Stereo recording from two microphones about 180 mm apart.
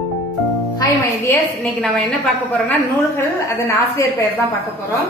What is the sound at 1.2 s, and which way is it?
Speech, 10° left (ahead or behind).